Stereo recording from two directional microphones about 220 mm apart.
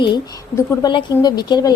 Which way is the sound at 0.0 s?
15° left (ahead or behind).